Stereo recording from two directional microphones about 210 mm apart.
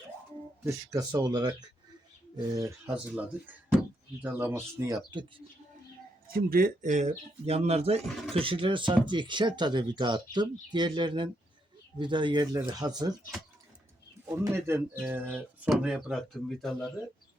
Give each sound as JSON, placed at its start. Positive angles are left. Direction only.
{"t": 0.6, "sound": "speech", "side_deg": -15}
{"t": 6.3, "sound": "speech", "side_deg": -45}
{"t": 8.0, "sound": "speech", "side_deg": 0}
{"t": 8.3, "sound": "speech", "side_deg": -25}
{"t": 14.3, "sound": "speech", "side_deg": -10}